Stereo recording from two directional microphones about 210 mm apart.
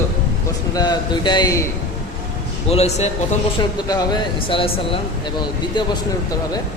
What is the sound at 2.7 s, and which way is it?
Speech, 30° left (ahead or behind).